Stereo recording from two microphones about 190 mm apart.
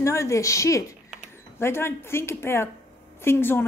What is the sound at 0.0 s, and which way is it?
Speech, 15° left (ahead or behind).